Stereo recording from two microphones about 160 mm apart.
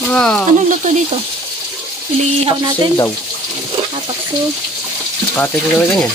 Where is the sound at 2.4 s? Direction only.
30° right (ahead or behind).